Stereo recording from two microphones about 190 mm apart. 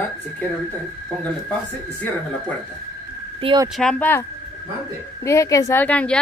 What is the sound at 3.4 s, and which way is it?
Speech, 25° right (ahead or behind).